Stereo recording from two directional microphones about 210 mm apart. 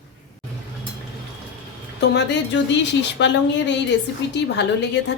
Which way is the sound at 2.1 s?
55° left (ahead or behind).